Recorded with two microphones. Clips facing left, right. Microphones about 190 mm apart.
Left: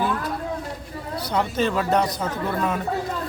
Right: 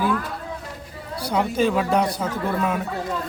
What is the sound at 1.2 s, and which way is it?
Speech, 10° right (ahead or behind).